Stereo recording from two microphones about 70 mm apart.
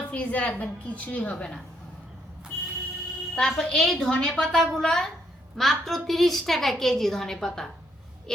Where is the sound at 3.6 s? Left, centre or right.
Centre.